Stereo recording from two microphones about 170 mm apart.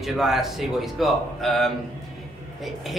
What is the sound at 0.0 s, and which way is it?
Speech, centre (ahead or behind).